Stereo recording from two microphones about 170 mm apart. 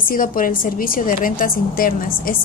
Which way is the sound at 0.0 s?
55° left (ahead or behind).